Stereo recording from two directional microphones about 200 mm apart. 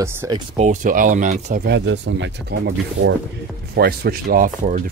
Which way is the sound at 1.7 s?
65° right (ahead or behind).